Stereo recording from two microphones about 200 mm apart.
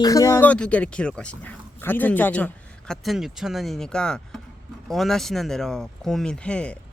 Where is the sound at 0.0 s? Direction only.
15° left (ahead or behind).